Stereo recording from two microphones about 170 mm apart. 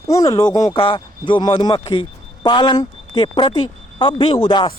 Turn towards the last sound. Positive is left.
turn(degrees=30)  # may be behind; listen again after turning